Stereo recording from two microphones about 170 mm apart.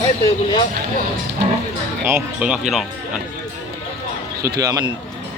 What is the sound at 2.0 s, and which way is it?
Speech, 10° right (ahead or behind).